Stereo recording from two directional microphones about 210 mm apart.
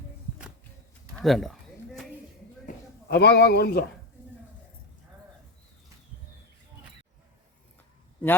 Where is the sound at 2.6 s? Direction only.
50° left (ahead or behind).